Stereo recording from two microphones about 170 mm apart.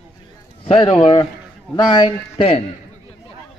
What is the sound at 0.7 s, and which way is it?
A man's voice, 35° left (ahead or behind).